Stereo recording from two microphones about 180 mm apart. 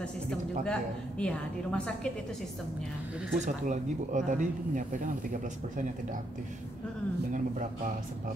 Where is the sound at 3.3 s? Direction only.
45° right (ahead or behind).